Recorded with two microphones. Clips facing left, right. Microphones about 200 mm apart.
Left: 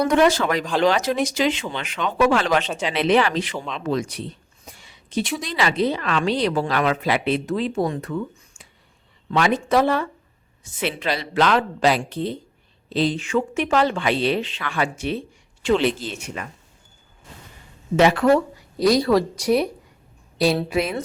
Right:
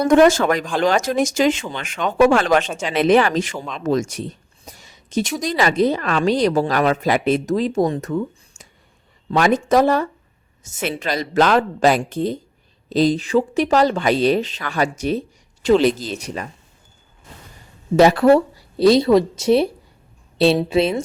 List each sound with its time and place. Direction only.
0.0 s speech: 45° right (ahead or behind)
17.9 s speech: 35° right (ahead or behind)